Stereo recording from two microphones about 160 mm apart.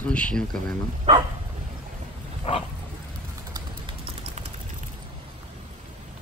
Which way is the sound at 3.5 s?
30° right (ahead or behind).